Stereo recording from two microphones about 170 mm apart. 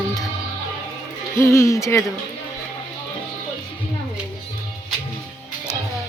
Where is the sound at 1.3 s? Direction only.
15° left (ahead or behind).